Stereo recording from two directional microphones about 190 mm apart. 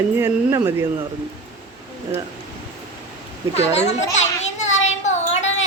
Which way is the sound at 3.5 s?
35° left (ahead or behind).